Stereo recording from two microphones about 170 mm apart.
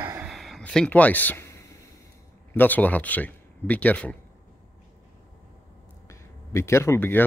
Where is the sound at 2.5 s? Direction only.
10° left (ahead or behind).